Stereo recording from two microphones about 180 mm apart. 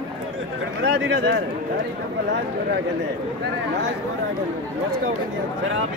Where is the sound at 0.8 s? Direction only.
75° right (ahead or behind).